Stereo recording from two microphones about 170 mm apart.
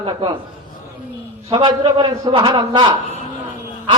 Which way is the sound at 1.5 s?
30° right (ahead or behind).